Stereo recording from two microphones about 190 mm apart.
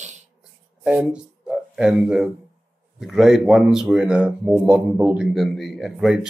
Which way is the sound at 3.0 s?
Centre (ahead or behind).